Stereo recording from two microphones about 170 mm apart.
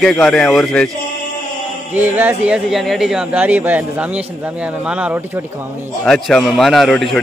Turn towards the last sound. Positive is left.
turn(degrees=0)  # may be behind; listen again after turning